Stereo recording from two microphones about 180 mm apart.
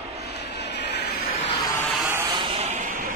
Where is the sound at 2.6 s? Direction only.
40° right (ahead or behind).